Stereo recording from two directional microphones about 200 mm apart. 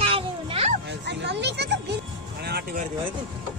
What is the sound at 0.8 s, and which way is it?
Music, 60° right (ahead or behind).